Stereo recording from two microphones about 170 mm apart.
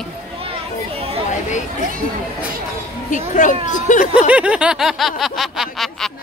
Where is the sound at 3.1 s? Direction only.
50° left (ahead or behind).